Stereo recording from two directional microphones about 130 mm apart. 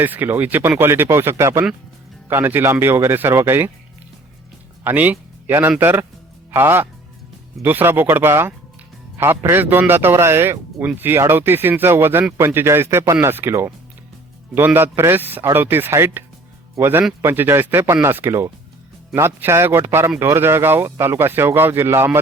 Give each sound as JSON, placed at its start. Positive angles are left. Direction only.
{"t": 0.0, "sound": "a man's voice", "side_deg": -15}
{"t": 4.8, "sound": "a man's voice", "side_deg": -15}